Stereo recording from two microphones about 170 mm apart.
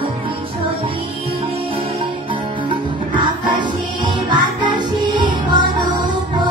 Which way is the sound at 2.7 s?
25° right (ahead or behind).